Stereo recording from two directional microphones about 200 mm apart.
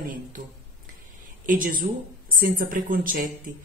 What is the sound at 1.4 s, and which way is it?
Speech, 45° right (ahead or behind).